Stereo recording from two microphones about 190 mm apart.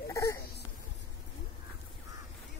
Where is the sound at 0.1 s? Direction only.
15° left (ahead or behind).